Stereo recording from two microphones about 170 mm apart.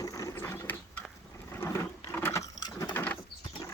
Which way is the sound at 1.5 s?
15° left (ahead or behind).